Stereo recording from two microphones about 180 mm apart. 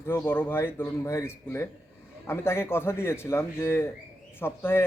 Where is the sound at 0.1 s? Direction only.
10° left (ahead or behind).